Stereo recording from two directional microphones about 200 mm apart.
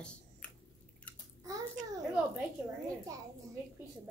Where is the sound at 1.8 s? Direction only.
40° right (ahead or behind).